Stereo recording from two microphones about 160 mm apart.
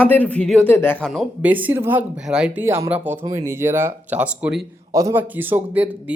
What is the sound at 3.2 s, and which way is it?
Speech, 20° right (ahead or behind).